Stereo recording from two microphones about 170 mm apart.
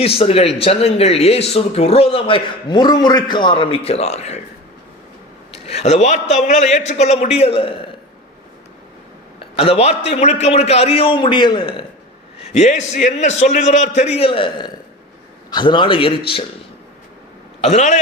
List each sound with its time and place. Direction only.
0.2 s speech: 35° left (ahead or behind)
5.5 s speech: 35° left (ahead or behind)
9.6 s speech: 35° left (ahead or behind)
12.4 s a man's voice: 40° left (ahead or behind)
17.6 s speech: 40° left (ahead or behind)